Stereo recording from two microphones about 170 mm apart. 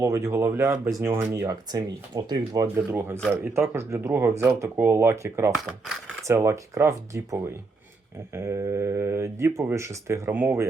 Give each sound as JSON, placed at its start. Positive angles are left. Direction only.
{"t": 0.0, "sound": "speech", "side_deg": -20}
{"t": 5.5, "sound": "speech", "side_deg": 0}
{"t": 6.2, "sound": "speech", "side_deg": -15}